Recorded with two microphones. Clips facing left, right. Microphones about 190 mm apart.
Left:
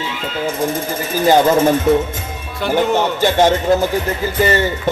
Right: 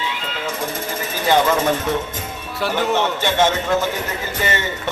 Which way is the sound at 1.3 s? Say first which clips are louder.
Left 5 dB; 40° left (ahead or behind).